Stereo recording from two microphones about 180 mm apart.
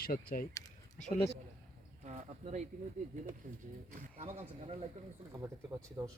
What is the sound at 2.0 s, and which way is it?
Speech, 45° right (ahead or behind).